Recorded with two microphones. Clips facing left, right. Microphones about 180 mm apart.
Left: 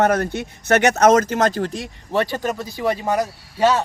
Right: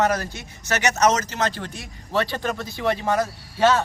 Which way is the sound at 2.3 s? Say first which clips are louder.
Left 3 dB; 10° left (ahead or behind).